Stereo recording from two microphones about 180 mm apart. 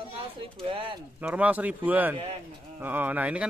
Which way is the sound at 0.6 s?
30° right (ahead or behind).